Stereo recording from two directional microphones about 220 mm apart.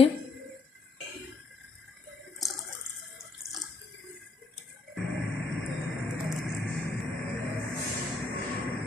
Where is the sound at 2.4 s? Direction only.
Centre (ahead or behind).